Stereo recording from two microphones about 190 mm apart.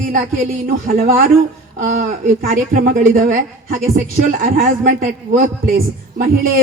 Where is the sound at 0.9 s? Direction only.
50° right (ahead or behind).